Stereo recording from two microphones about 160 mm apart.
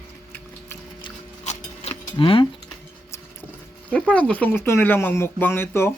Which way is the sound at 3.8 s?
5° left (ahead or behind).